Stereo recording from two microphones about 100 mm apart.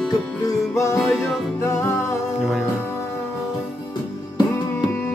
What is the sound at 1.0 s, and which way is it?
Music, centre (ahead or behind).